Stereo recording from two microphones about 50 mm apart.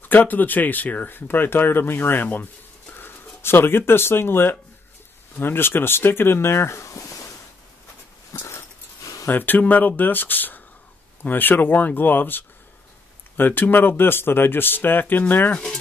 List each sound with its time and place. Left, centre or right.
0.0 s speech: left
8.4 s a sound: left
9.3 s speech: left